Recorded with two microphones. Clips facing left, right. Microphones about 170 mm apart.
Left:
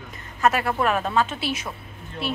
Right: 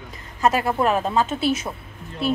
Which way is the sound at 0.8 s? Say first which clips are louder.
Right 1 dB; 30° right (ahead or behind).